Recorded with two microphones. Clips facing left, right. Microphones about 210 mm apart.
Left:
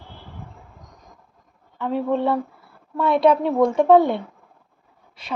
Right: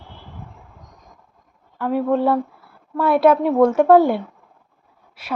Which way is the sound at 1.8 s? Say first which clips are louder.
Right 3 dB; 5° right (ahead or behind).